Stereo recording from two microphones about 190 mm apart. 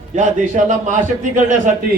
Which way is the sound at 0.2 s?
40° right (ahead or behind).